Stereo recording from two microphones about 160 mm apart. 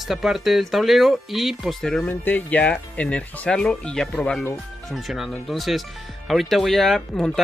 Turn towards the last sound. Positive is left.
turn(degrees=0)  # may be behind; listen again after turning